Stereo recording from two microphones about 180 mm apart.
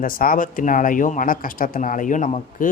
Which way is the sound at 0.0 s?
50° left (ahead or behind).